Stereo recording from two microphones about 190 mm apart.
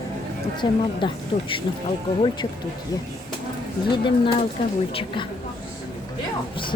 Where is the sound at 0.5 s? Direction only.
25° left (ahead or behind).